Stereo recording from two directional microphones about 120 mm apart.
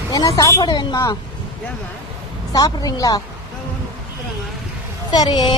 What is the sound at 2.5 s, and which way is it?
Speech, 30° left (ahead or behind).